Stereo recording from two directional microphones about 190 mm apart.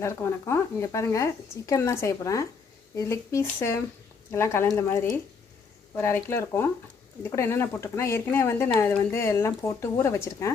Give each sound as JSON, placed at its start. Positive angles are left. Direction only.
{"t": 0.0, "sound": "speech", "side_deg": 15}